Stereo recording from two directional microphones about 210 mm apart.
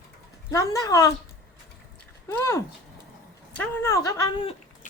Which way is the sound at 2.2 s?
15° left (ahead or behind).